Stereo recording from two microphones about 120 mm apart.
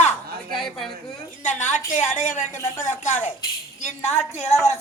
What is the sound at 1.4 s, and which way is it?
A woman's voice, 90° left.